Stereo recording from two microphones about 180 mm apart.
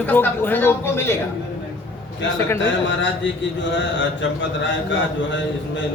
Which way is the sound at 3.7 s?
90° left.